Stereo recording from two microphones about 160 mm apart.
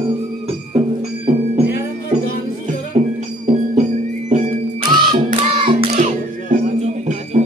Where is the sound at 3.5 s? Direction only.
45° right (ahead or behind).